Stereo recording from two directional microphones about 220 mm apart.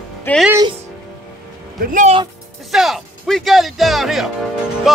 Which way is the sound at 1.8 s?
35° right (ahead or behind).